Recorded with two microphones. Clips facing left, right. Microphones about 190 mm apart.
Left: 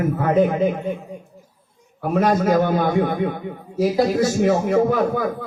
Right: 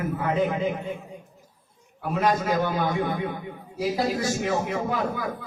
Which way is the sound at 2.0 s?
50° left (ahead or behind).